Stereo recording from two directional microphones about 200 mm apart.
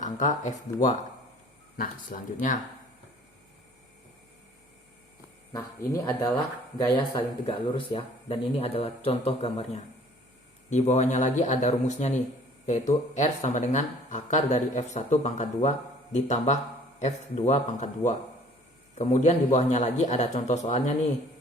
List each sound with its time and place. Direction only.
0.0 s speech: 35° left (ahead or behind)
5.5 s speech: 15° left (ahead or behind); by 20.9 s 35° left (ahead or behind)